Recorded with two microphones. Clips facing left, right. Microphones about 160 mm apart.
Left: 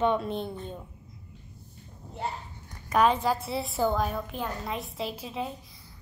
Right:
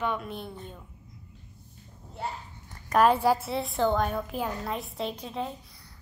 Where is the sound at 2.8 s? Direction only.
5° right (ahead or behind).